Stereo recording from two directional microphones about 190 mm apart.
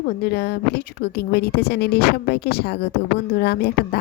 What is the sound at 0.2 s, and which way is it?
Speech, 55° left (ahead or behind).